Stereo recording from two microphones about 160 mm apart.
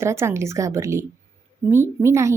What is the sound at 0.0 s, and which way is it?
A woman's voice, 15° right (ahead or behind).